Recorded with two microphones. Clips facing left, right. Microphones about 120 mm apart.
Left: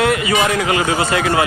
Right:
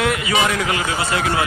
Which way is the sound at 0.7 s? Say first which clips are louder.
Left 5 dB; 90° left.